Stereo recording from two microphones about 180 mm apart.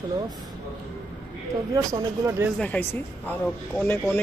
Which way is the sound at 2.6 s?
10° left (ahead or behind).